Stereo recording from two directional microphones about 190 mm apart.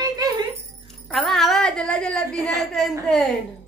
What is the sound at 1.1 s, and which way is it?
A woman's voice, centre (ahead or behind).